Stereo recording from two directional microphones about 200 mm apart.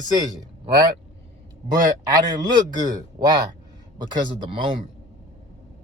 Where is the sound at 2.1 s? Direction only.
20° right (ahead or behind).